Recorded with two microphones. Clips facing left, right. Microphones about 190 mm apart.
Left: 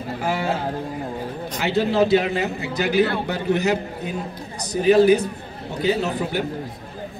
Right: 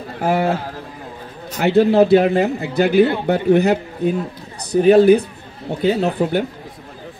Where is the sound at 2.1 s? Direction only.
35° right (ahead or behind).